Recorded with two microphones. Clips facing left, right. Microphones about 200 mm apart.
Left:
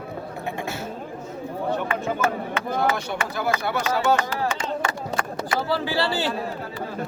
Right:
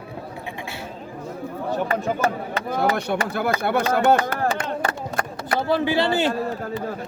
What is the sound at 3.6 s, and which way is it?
Speech, 55° right (ahead or behind).